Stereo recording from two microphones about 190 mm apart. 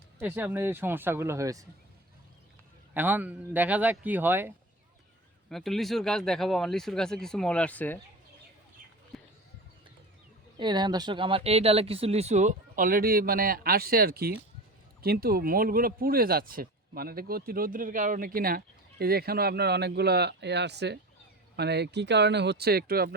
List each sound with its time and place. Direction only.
0.2 s speech: 10° right (ahead or behind)
2.9 s speech: 10° right (ahead or behind)
5.5 s speech: centre (ahead or behind)
9.1 s a sound: centre (ahead or behind)
10.6 s speech: 25° right (ahead or behind); by 23.1 s 55° right (ahead or behind)